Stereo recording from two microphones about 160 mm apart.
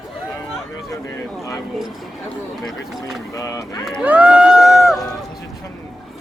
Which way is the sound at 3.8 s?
5° right (ahead or behind).